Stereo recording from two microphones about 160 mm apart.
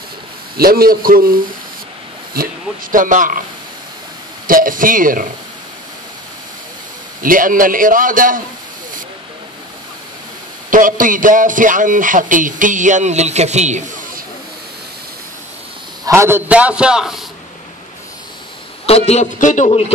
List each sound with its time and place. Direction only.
0.6 s a man's voice: 65° right (ahead or behind)
4.5 s a man's voice: 60° right (ahead or behind)
7.2 s a man's voice: 60° right (ahead or behind)
10.7 s a man's voice: 55° right (ahead or behind)
16.1 s a man's voice: 15° right (ahead or behind)
18.9 s a man's voice: 40° left (ahead or behind)
19.3 s speech: 50° left (ahead or behind)